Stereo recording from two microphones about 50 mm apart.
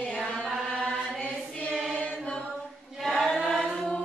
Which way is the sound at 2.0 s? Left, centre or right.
Left.